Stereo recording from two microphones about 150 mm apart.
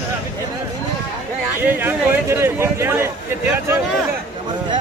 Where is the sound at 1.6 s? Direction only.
15° right (ahead or behind).